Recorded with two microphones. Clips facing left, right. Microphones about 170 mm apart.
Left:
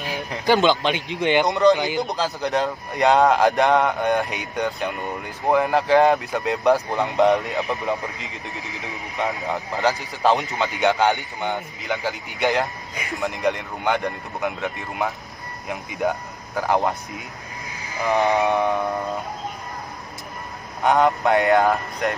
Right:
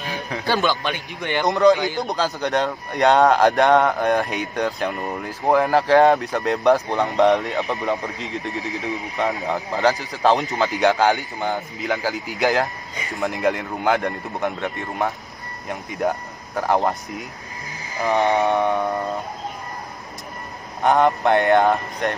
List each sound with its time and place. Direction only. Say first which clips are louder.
0.5 s a man's voice: left 4 dB; 20° left (ahead or behind)
1.5 s speech: right 1 dB; centre (ahead or behind)
17.9 s speech: right 1 dB; centre (ahead or behind)
20.8 s speech: right 1 dB; centre (ahead or behind)